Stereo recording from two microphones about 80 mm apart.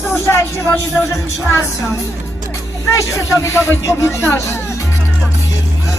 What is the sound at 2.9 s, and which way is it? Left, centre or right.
Speech, left.